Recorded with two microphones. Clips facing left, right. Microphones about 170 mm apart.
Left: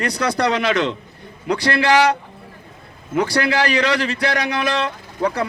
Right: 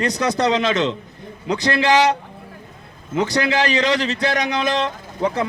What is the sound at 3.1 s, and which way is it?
A man's voice, 20° right (ahead or behind).